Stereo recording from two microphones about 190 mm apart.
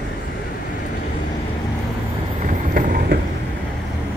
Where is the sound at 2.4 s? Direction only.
45° right (ahead or behind).